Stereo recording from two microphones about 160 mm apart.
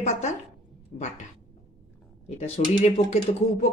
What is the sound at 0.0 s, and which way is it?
Speech, 45° left (ahead or behind).